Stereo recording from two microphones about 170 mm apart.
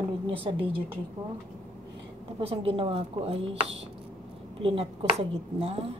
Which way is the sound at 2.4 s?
35° right (ahead or behind).